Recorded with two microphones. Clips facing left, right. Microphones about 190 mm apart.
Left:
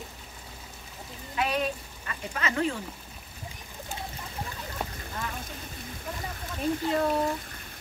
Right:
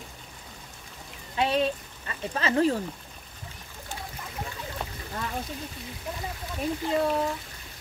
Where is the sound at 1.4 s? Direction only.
30° right (ahead or behind).